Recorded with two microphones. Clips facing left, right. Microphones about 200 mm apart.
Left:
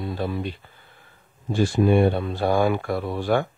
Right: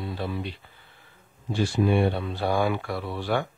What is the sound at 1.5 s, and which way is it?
Speech, 50° left (ahead or behind).